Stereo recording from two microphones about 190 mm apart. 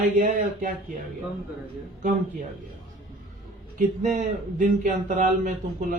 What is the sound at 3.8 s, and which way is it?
Speech, 45° right (ahead or behind).